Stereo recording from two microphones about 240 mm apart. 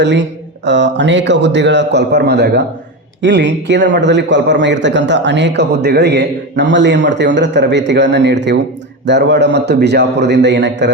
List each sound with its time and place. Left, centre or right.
0.0 s a man's voice: right